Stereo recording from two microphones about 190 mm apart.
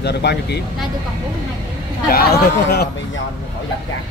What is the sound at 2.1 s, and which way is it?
Speech, 55° left (ahead or behind).